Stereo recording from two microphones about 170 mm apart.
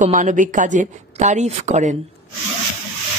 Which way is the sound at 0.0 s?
45° right (ahead or behind).